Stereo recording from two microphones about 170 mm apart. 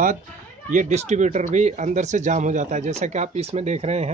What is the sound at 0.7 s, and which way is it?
Speech, 45° right (ahead or behind).